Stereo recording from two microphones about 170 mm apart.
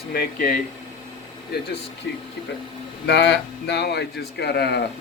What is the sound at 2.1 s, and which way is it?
Speech, 80° left.